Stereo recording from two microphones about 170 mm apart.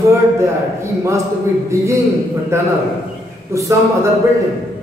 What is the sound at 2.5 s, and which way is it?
Speech, 15° right (ahead or behind).